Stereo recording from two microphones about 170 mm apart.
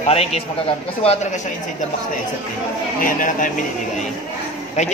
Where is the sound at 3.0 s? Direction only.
50° left (ahead or behind).